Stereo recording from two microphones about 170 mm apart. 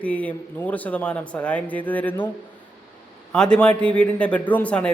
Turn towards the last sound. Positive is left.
turn(degrees=5)  # may be behind; listen again after turning